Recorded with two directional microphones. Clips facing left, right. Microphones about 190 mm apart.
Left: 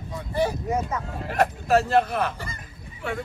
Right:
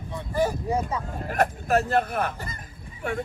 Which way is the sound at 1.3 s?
50° right (ahead or behind).